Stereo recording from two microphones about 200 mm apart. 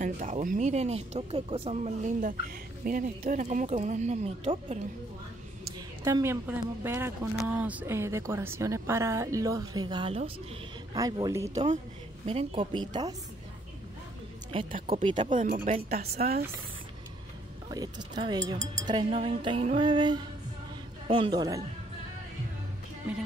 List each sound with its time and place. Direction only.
0.0 s speech: 40° right (ahead or behind)
6.0 s speech: 15° right (ahead or behind)
11.5 s speech: 35° right (ahead or behind)
15.0 s speech: 25° right (ahead or behind)
15.3 s speech: 40° right (ahead or behind)
17.6 s speech: 20° right (ahead or behind)